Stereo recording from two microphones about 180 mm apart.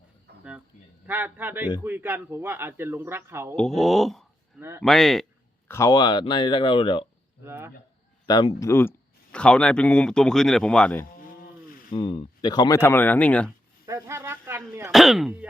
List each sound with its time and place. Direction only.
0.3 s a sound: 65° right (ahead or behind)
1.0 s a man's voice: 10° right (ahead or behind)
3.5 s speech: 5° left (ahead or behind)
5.6 s speech: 15° left (ahead or behind)
7.4 s a man's voice: 15° right (ahead or behind)
8.3 s speech: 20° left (ahead or behind); by 11.0 s 5° left (ahead or behind)
11.9 s speech: 30° left (ahead or behind); by 13.5 s 5° left (ahead or behind)
13.8 s a sound: 15° right (ahead or behind)
14.7 s a man's voice: 15° right (ahead or behind)
14.9 s speech: centre (ahead or behind)